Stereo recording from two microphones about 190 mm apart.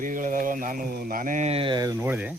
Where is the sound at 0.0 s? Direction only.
45° right (ahead or behind).